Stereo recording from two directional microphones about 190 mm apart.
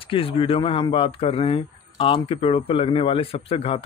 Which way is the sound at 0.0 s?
30° left (ahead or behind).